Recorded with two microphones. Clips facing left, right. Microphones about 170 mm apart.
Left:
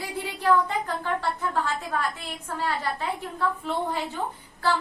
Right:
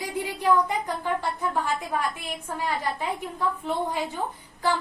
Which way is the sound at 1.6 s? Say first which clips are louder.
Right 1 dB; 15° right (ahead or behind).